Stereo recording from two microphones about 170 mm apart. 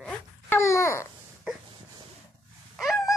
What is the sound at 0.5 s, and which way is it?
Babbling, 15° left (ahead or behind).